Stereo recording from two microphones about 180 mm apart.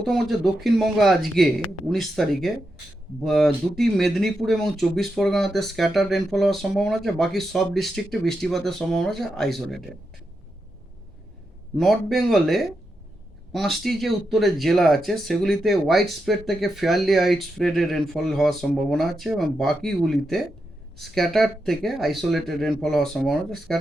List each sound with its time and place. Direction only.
0.0 s speech: centre (ahead or behind)
11.8 s speech: centre (ahead or behind)